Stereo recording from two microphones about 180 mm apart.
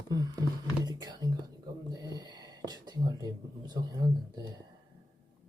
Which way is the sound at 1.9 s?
20° right (ahead or behind).